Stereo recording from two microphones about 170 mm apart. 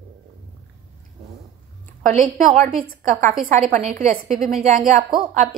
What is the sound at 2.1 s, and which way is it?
A woman's voice, 40° right (ahead or behind).